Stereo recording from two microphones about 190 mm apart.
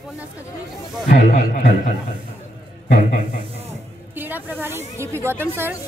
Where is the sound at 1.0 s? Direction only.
45° left (ahead or behind).